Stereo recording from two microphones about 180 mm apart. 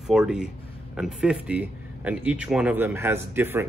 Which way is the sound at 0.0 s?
5° right (ahead or behind).